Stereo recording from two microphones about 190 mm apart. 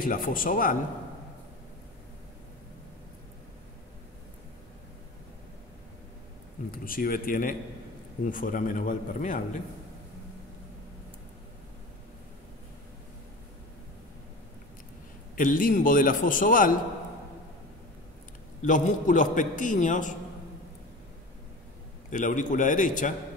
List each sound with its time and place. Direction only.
0.0 s a man's voice: 45° left (ahead or behind)
6.7 s a man's voice: 50° left (ahead or behind)
15.3 s a man's voice: 45° left (ahead or behind)
18.6 s a man's voice: 40° left (ahead or behind)
22.1 s a man's voice: 40° left (ahead or behind)